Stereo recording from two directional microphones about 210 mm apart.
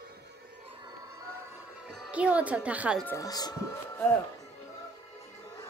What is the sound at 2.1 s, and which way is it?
Speech, 5° right (ahead or behind).